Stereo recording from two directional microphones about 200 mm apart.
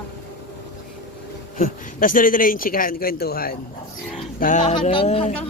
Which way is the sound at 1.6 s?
45° left (ahead or behind).